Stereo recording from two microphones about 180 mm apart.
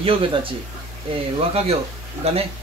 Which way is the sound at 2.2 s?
35° right (ahead or behind).